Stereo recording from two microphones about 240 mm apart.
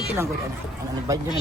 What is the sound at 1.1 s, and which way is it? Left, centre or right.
Speech, centre.